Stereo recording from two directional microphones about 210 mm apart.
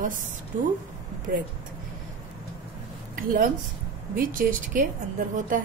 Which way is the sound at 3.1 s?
40° right (ahead or behind).